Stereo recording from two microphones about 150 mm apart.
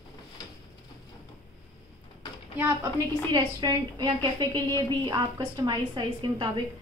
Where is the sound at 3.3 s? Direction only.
25° right (ahead or behind).